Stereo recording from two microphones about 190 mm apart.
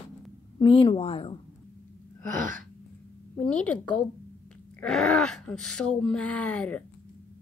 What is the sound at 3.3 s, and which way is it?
A woman's voice, 5° left (ahead or behind).